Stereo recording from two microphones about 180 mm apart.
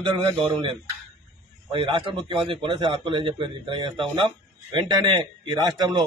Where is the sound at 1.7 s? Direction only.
25° right (ahead or behind).